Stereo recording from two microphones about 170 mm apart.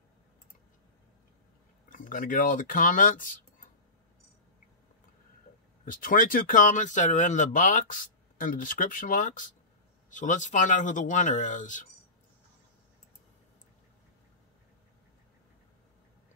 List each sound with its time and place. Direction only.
1.9 s speech: 55° left (ahead or behind)
5.9 s speech: 50° left (ahead or behind)